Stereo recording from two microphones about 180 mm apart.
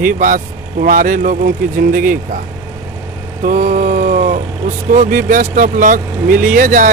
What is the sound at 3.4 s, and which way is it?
Mantra, 45° right (ahead or behind).